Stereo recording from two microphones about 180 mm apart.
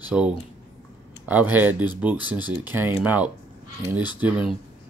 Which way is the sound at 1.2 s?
10° right (ahead or behind).